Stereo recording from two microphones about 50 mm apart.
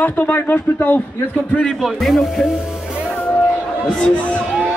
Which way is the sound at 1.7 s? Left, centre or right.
Centre.